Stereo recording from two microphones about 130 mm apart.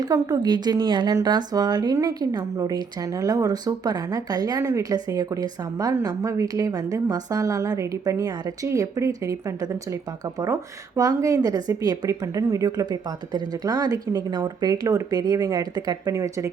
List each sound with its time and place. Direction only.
0.0 s a woman's voice: 30° right (ahead or behind)